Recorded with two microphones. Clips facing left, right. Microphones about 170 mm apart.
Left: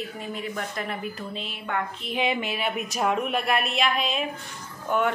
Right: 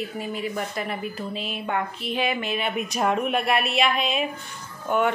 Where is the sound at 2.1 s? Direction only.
20° left (ahead or behind).